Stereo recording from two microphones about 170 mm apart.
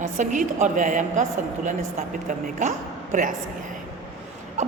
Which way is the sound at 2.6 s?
45° right (ahead or behind).